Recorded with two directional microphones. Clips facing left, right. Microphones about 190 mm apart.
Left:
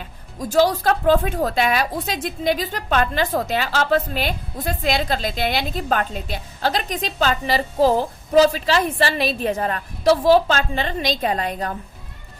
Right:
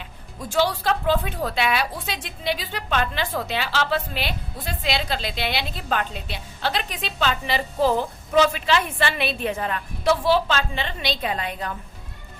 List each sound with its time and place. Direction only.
0.0 s a woman's voice: 40° left (ahead or behind)